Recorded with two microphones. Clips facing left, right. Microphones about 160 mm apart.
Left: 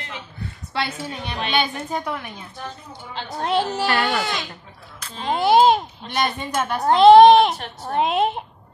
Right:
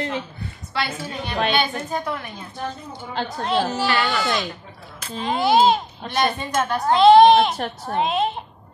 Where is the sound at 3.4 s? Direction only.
55° left (ahead or behind).